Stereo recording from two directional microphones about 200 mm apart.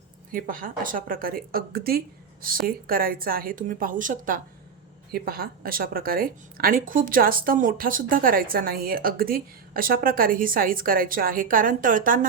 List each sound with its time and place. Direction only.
0.3 s a woman's voice: 45° right (ahead or behind)